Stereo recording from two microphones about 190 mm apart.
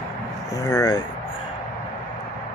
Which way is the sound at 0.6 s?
20° left (ahead or behind).